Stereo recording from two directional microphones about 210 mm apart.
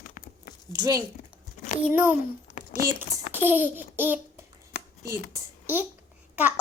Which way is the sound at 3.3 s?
10° right (ahead or behind).